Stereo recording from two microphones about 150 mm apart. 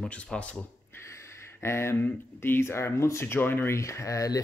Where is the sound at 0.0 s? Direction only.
5° left (ahead or behind).